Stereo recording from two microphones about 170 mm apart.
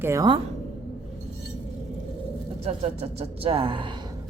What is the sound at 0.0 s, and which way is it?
Speech, 15° right (ahead or behind).